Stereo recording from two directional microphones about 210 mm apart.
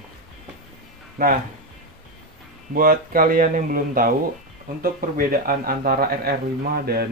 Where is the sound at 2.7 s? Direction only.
45° right (ahead or behind).